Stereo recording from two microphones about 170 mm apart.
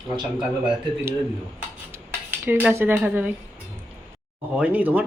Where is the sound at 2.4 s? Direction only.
15° right (ahead or behind).